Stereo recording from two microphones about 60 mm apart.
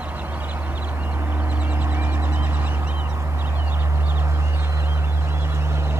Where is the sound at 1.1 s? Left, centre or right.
Right.